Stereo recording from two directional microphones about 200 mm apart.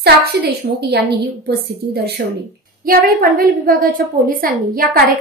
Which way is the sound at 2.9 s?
50° right (ahead or behind).